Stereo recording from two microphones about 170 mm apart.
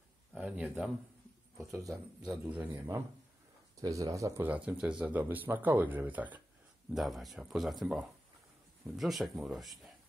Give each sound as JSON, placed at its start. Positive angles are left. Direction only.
{"t": 0.3, "sound": "speech", "side_deg": -5}
{"t": 2.4, "sound": "speech", "side_deg": -10}